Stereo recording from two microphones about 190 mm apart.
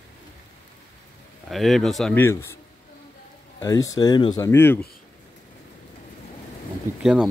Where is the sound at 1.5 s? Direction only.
Centre (ahead or behind).